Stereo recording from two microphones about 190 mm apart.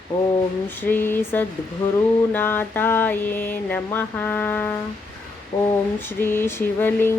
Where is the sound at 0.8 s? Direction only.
10° left (ahead or behind).